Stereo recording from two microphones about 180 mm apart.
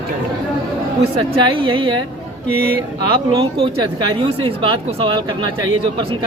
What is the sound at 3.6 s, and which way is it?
Speech, 30° right (ahead or behind).